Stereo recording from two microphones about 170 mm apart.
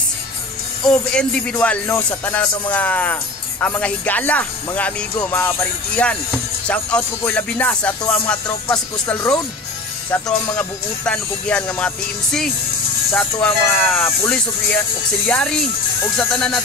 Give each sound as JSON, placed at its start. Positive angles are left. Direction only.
{"t": 0.8, "sound": "speech", "side_deg": 5}
{"t": 10.1, "sound": "speech", "side_deg": 20}
{"t": 10.5, "sound": "speech", "side_deg": 5}
{"t": 13.7, "sound": "speech", "side_deg": 0}
{"t": 14.0, "sound": "speech", "side_deg": 10}